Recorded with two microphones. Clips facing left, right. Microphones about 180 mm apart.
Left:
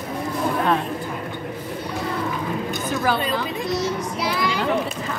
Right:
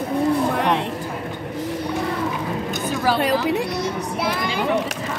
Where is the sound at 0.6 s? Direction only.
85° right.